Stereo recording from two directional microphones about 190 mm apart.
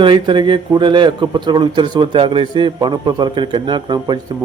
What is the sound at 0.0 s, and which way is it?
A man's voice, 25° right (ahead or behind).